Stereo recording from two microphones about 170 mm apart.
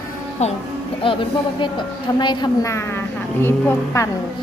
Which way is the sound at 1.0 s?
30° left (ahead or behind).